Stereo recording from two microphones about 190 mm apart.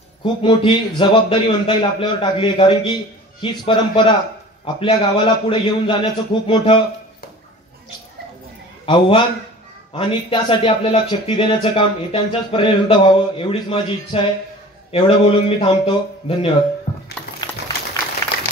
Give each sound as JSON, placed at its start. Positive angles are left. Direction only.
{"t": 0.2, "sound": "speech", "side_deg": 25}
{"t": 8.8, "sound": "speech", "side_deg": 25}